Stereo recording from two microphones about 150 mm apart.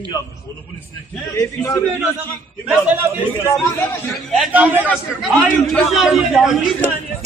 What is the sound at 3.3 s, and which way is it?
Speech, 20° left (ahead or behind).